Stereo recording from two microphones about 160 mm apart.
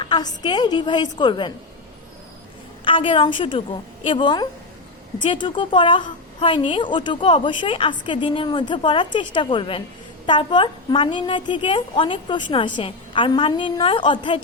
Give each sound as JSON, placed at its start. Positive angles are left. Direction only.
{"t": 0.0, "sound": "a woman's voice", "side_deg": 30}
{"t": 2.8, "sound": "a woman's voice", "side_deg": 30}